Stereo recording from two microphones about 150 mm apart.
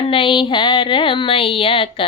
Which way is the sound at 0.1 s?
35° left (ahead or behind).